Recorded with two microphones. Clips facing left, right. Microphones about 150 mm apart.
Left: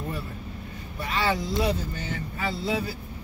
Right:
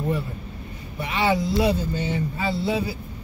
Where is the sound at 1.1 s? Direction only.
25° right (ahead or behind).